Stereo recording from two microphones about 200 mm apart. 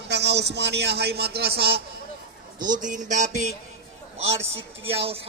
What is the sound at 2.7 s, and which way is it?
A man's voice, 40° right (ahead or behind).